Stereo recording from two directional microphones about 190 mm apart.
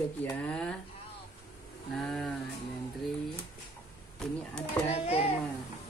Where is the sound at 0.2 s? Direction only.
5° left (ahead or behind).